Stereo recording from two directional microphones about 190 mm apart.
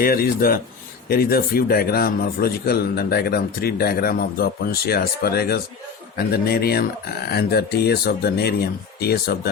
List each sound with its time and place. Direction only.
0.0 s speech: 50° left (ahead or behind)